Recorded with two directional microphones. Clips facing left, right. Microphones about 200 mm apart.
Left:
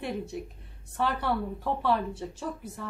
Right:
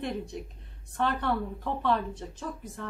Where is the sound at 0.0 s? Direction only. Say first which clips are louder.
Even; 5° left (ahead or behind).